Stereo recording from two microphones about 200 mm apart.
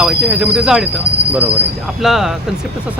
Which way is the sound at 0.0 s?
5° right (ahead or behind).